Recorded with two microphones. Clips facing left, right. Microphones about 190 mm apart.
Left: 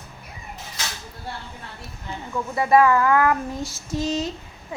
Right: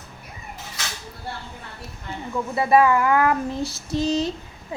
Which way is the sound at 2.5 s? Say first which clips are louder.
Even; 25° right (ahead or behind).